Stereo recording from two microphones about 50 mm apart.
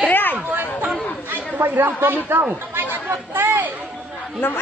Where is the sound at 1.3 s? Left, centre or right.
Right.